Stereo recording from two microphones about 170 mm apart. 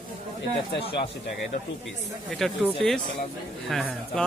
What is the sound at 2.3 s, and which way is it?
Speech, 5° left (ahead or behind).